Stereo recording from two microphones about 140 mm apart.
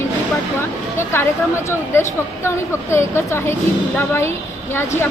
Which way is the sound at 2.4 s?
20° left (ahead or behind).